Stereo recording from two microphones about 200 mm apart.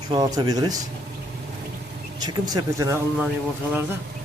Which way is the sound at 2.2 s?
15° right (ahead or behind).